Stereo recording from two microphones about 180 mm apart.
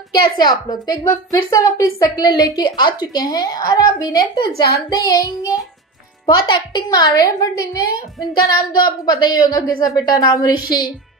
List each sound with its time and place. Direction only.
0.4 s a woman's voice: 20° left (ahead or behind)